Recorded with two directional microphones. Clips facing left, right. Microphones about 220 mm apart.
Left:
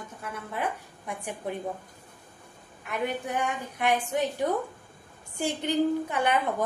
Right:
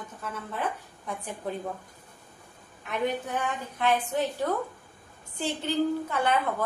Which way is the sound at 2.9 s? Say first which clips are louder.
Right 1 dB; 15° left (ahead or behind).